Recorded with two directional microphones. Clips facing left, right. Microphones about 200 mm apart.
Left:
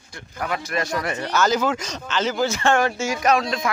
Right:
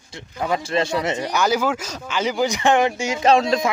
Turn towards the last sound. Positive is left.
turn(degrees=-25)  # may be behind; listen again after turning